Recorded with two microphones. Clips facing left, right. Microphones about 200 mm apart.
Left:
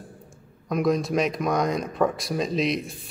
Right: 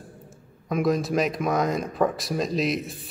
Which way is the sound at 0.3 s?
Centre (ahead or behind).